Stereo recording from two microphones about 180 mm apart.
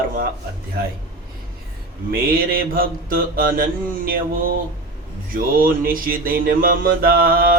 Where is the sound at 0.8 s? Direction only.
55° right (ahead or behind).